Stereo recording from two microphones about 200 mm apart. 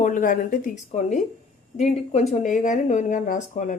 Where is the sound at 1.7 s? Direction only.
30° left (ahead or behind).